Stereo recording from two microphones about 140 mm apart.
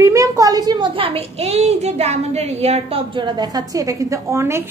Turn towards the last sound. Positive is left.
turn(degrees=-20)  # may be behind; listen again after turning